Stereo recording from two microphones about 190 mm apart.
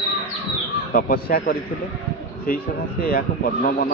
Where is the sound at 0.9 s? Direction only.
50° left (ahead or behind).